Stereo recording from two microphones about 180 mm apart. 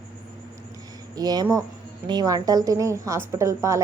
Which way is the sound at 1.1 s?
20° right (ahead or behind).